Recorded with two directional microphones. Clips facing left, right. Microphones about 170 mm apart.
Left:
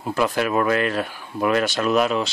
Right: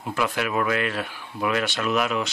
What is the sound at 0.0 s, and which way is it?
Speech, 35° left (ahead or behind).